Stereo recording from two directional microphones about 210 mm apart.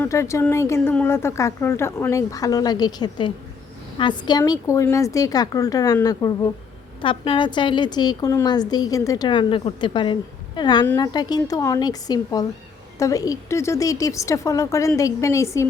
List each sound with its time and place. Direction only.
0.0 s a woman's voice: 15° left (ahead or behind)